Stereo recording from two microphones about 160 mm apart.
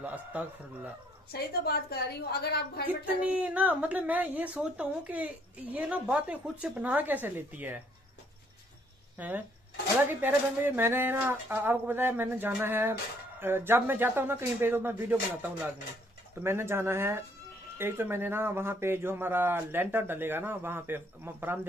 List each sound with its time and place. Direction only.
0.0 s speech: 10° right (ahead or behind)
1.3 s a woman's voice: 80° left
2.9 s speech: 10° right (ahead or behind)
10.0 s speech: 15° right (ahead or behind)
16.4 s speech: 15° right (ahead or behind)